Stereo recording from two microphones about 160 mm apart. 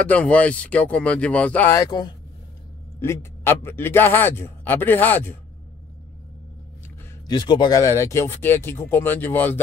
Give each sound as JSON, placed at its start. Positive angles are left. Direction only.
{"t": 0.0, "sound": "a man's voice", "side_deg": 10}
{"t": 1.9, "sound": "speech", "side_deg": 25}
{"t": 3.0, "sound": "a man's voice", "side_deg": 15}
{"t": 7.2, "sound": "a man's voice", "side_deg": 30}